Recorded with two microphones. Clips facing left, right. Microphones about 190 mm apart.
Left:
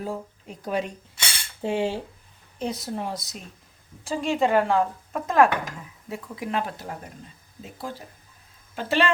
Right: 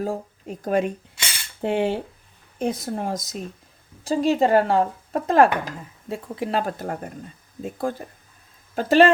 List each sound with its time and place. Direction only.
0.0 s speech: 45° right (ahead or behind)
6.6 s a woman's voice: 45° right (ahead or behind)